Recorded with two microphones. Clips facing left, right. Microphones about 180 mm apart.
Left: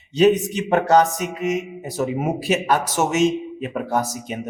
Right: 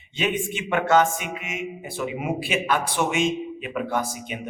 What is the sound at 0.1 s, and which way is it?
A man's voice, 40° left (ahead or behind).